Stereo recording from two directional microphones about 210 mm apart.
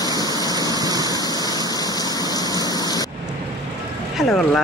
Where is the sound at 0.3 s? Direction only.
20° right (ahead or behind).